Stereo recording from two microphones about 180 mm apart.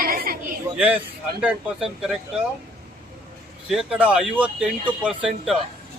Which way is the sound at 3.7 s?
5° right (ahead or behind).